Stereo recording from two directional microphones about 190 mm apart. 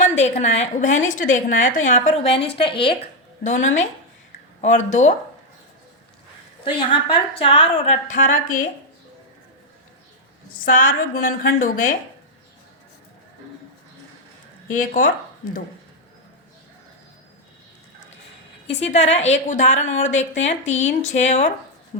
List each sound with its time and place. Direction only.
0.0 s a woman's voice: 40° left (ahead or behind)
3.4 s a woman's voice: 40° left (ahead or behind)
6.7 s a woman's voice: 25° left (ahead or behind); by 8.6 s 45° left (ahead or behind)
10.7 s a woman's voice: 45° left (ahead or behind)
14.7 s a woman's voice: 45° left (ahead or behind)
18.7 s a woman's voice: 35° left (ahead or behind)